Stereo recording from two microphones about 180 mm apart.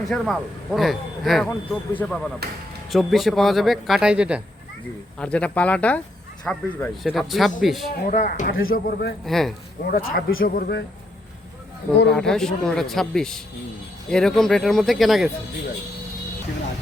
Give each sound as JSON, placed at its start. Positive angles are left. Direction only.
{"t": 0.1, "sound": "speech", "side_deg": 0}
{"t": 2.4, "sound": "speech", "side_deg": -60}
{"t": 2.9, "sound": "speech", "side_deg": 0}
{"t": 5.2, "sound": "speech", "side_deg": 5}
{"t": 8.0, "sound": "speech", "side_deg": 45}
{"t": 8.7, "sound": "speech", "side_deg": 60}
{"t": 9.2, "sound": "speech", "side_deg": 0}
{"t": 9.8, "sound": "speech", "side_deg": 55}
{"t": 12.0, "sound": "speech", "side_deg": 5}